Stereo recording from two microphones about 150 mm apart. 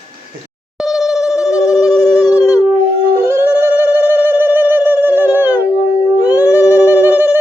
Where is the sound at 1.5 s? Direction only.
25° left (ahead or behind).